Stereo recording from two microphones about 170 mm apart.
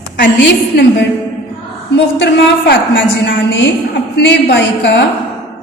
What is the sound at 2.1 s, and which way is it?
A woman's voice, 90° left.